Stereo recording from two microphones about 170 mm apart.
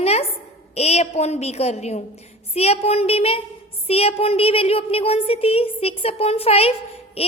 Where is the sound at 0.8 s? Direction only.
40° left (ahead or behind).